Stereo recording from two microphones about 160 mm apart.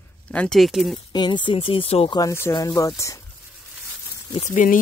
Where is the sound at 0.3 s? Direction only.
5° left (ahead or behind).